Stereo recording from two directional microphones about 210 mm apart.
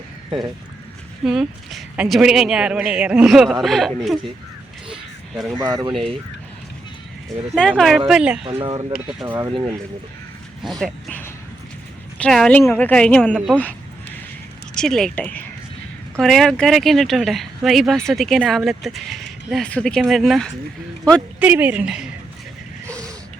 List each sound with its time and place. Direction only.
0.3 s speech: 20° right (ahead or behind)
1.2 s speech: 5° right (ahead or behind)
5.5 s speech: 20° right (ahead or behind)
5.9 s speech: centre (ahead or behind)
7.5 s speech: 5° left (ahead or behind)
8.4 s speech: 25° right (ahead or behind)
9.2 s a woman's voice: 10° right (ahead or behind)
9.5 s speech: 20° right (ahead or behind)
10.6 s speech: centre (ahead or behind)
13.6 s a sound: 10° left (ahead or behind)
14.8 s a woman's voice: 5° left (ahead or behind)